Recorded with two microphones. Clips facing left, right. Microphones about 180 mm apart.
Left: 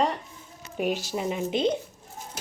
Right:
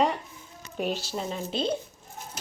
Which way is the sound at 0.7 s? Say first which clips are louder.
Left 2 dB; 10° left (ahead or behind).